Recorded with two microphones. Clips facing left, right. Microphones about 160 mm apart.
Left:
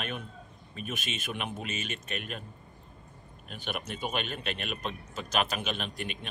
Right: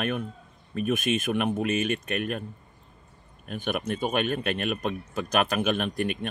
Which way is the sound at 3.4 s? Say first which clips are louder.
Right 8 dB; 50° right (ahead or behind).